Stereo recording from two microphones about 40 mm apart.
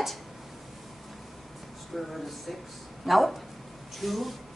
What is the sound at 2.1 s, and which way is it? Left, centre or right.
A woman's voice, centre.